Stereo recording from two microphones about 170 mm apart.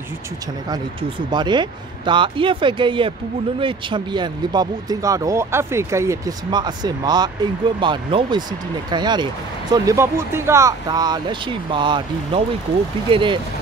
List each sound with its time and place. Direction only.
1.3 s speech: 25° right (ahead or behind)